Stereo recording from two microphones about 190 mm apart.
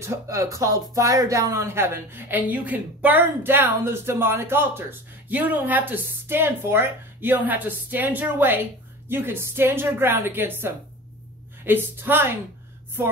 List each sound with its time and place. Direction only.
0.0 s speech: 15° right (ahead or behind)